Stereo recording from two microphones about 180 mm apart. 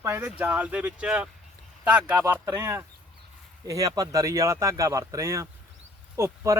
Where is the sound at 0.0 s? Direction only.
10° right (ahead or behind).